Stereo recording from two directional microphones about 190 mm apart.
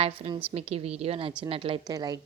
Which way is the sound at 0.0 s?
30° right (ahead or behind).